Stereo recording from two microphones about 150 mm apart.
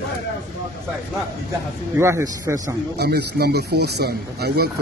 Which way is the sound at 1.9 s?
20° right (ahead or behind).